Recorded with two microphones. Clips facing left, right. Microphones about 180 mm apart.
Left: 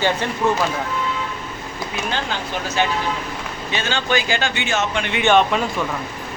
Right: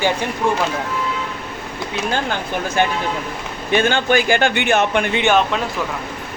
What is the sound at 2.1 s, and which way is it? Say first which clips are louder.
Speech: right 4 dB; 50° right (ahead or behind).